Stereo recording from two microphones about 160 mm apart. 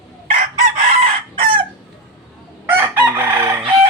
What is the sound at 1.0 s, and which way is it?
Chicken, 30° right (ahead or behind).